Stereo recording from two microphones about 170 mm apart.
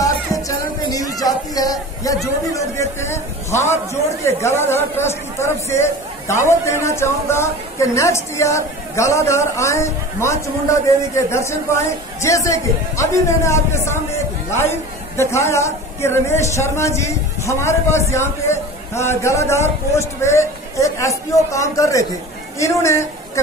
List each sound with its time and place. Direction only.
0.0 s music: 20° left (ahead or behind)
1.2 s a woman's voice: 20° left (ahead or behind)